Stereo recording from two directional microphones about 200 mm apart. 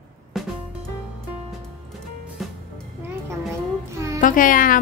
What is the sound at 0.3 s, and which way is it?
Music, centre (ahead or behind).